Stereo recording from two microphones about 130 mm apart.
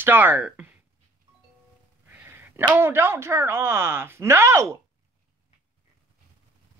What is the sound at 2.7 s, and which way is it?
Speech, 20° right (ahead or behind).